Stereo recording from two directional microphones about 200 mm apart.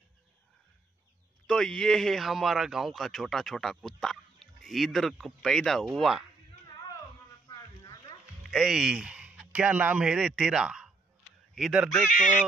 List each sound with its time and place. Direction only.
1.5 s a man's voice: 5° left (ahead or behind)
7.4 s a sound: 20° left (ahead or behind)
8.5 s a man's voice: centre (ahead or behind)